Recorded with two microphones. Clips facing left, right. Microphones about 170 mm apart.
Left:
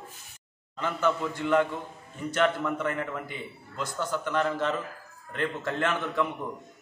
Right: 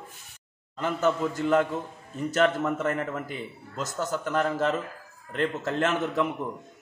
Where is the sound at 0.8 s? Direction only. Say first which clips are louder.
Right 2 dB; 40° right (ahead or behind).